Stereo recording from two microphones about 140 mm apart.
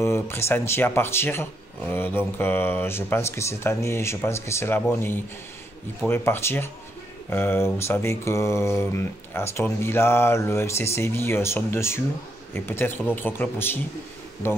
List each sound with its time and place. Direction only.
0.0 s speech: 20° left (ahead or behind)